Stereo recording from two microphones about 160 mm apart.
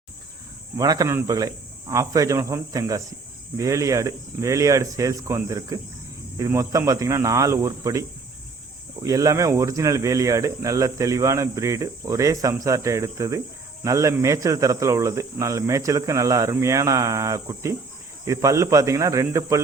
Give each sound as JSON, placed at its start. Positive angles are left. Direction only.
{"t": 0.8, "sound": "speech", "side_deg": -25}
{"t": 9.0, "sound": "speech", "side_deg": -20}